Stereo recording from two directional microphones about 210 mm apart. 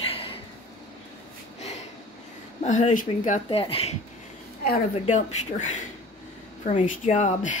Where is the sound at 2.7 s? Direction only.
35° left (ahead or behind).